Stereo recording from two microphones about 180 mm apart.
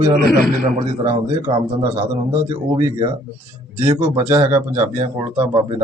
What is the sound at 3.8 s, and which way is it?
Speech, 10° right (ahead or behind).